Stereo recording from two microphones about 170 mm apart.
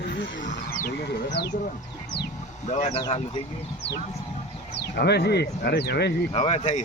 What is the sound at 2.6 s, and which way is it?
Speech, 45° left (ahead or behind).